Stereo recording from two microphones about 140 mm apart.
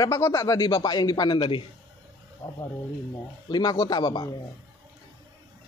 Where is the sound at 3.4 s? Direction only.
25° left (ahead or behind).